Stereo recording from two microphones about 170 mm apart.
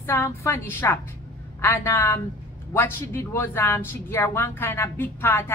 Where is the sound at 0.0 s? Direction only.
15° left (ahead or behind).